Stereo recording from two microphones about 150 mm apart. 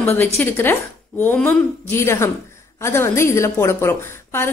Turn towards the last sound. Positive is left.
turn(degrees=15)  # may be behind; listen again after turning